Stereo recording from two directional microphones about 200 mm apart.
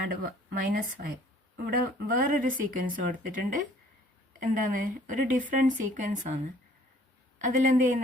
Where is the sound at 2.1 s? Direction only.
40° right (ahead or behind).